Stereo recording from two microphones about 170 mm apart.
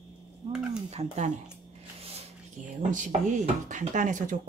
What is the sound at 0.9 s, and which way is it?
Speech, 40° right (ahead or behind).